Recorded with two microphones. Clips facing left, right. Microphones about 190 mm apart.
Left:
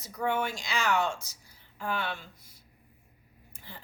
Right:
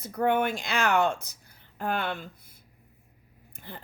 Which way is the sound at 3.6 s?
55° right (ahead or behind).